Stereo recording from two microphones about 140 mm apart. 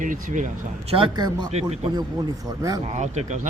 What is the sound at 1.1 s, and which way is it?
Speech, 30° right (ahead or behind).